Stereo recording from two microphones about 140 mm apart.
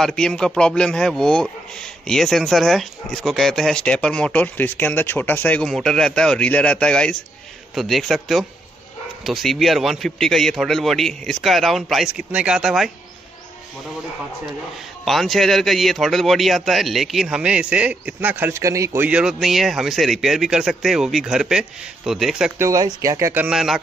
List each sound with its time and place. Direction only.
0.0 s a man's voice: 5° left (ahead or behind)
15.0 s a man's voice: centre (ahead or behind); by 19.0 s 20° right (ahead or behind)
19.0 s a man's voice: 5° right (ahead or behind)
22.6 s speech: 25° right (ahead or behind); by 23.8 s 5° right (ahead or behind)